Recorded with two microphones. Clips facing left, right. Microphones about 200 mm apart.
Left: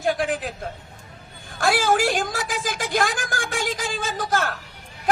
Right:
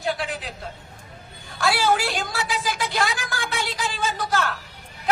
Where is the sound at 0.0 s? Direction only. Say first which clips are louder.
Left 4 dB; 50° left (ahead or behind).